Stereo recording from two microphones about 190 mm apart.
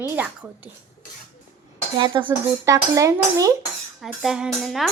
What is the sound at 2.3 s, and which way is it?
Speech, 15° right (ahead or behind).